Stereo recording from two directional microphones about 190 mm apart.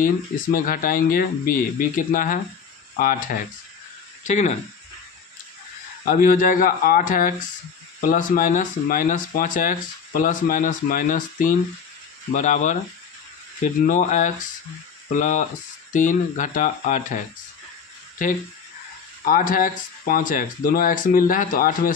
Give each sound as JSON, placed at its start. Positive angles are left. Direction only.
{"t": 0.0, "sound": "speech", "side_deg": 50}
{"t": 6.0, "sound": "speech", "side_deg": 50}
{"t": 13.8, "sound": "speech", "side_deg": 40}
{"t": 18.2, "sound": "speech", "side_deg": 45}